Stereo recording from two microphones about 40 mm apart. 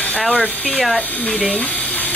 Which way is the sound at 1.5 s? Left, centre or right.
Left.